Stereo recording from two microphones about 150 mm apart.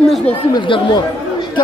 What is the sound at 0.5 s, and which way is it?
Speech, 30° left (ahead or behind).